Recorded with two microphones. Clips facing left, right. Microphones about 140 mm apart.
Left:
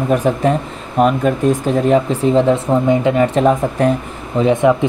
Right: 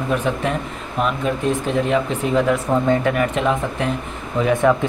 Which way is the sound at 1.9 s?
30° left (ahead or behind).